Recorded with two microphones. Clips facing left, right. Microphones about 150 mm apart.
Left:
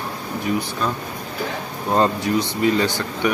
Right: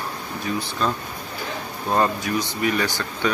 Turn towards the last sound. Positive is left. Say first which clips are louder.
# left 4 dB
turn(degrees=20)  # may be behind; listen again after turning